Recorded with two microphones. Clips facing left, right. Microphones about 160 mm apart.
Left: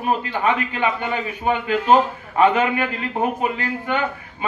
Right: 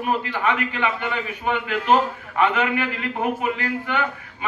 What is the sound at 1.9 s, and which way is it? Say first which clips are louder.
A man's voice: left 2 dB; 25° left (ahead or behind).